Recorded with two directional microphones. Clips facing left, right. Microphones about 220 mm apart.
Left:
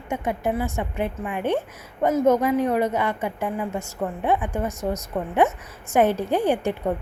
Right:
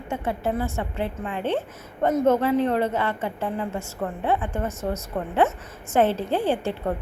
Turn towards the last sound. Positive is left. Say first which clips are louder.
# left 2 dB
turn(degrees=15)  # may be behind; listen again after turning